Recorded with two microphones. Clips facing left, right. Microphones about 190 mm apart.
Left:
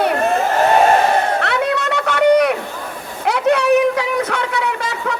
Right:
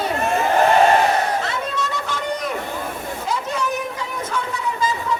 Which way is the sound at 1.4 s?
70° left (ahead or behind).